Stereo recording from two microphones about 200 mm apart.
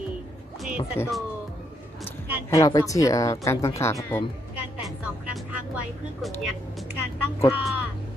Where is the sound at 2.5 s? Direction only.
15° left (ahead or behind).